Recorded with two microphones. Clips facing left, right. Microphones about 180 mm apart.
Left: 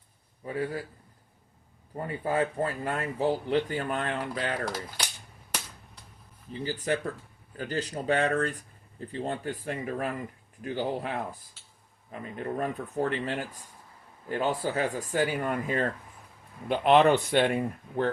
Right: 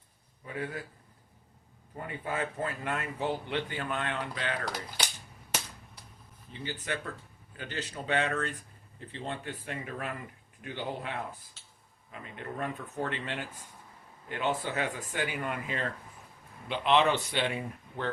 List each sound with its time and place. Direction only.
0.4 s speech: 35° left (ahead or behind)
2.0 s speech: 35° left (ahead or behind)
6.5 s speech: 40° left (ahead or behind)